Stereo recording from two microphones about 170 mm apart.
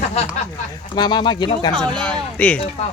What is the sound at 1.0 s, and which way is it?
Speech, 25° left (ahead or behind).